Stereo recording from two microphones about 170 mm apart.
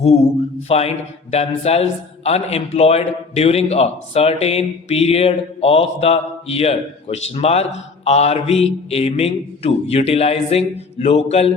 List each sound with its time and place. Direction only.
0.0 s a man's voice: 40° left (ahead or behind)